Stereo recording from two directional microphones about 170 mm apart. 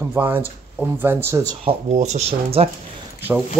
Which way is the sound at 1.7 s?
40° right (ahead or behind).